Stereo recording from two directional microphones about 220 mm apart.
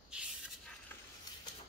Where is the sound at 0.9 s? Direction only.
10° left (ahead or behind).